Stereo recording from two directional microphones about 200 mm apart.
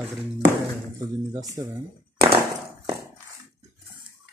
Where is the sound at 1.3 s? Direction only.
15° right (ahead or behind).